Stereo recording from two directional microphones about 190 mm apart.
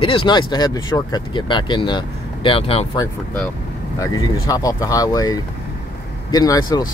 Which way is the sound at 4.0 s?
20° left (ahead or behind).